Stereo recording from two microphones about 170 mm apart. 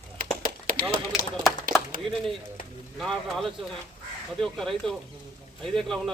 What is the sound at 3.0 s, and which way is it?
Speech, centre (ahead or behind).